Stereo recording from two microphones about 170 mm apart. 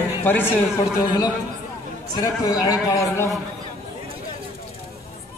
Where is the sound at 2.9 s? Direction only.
20° left (ahead or behind).